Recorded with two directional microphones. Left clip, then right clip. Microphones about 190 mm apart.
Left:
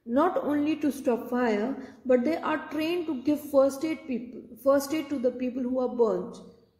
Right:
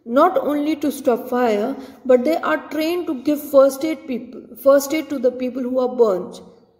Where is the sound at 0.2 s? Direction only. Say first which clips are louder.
Right 10 dB; 15° left (ahead or behind).